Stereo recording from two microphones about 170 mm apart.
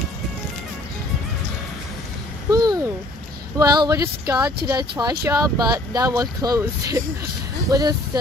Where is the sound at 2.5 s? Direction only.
20° right (ahead or behind).